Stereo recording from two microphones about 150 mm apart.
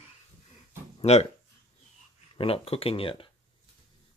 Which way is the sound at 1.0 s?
45° left (ahead or behind).